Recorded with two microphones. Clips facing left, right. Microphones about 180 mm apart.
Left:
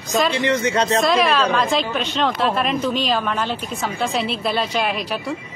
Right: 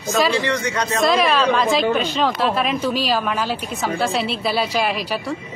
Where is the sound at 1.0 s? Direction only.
Centre (ahead or behind).